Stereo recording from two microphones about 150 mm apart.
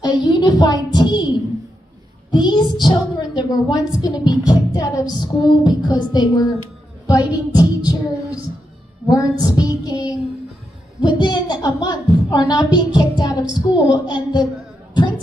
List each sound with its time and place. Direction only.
0.0 s a child's voice: 30° left (ahead or behind)
2.3 s a child's voice: 30° left (ahead or behind)
7.5 s a child's voice: 25° left (ahead or behind)